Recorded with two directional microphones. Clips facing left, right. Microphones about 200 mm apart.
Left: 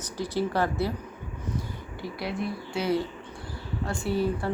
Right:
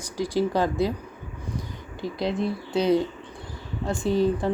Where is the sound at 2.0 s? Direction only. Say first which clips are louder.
Right 6 dB; 20° right (ahead or behind).